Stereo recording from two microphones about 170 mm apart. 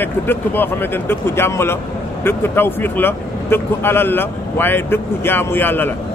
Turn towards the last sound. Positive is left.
turn(degrees=10)  # may be behind; listen again after turning